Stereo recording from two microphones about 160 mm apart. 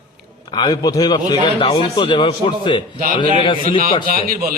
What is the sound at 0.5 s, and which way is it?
A man's voice, 25° left (ahead or behind).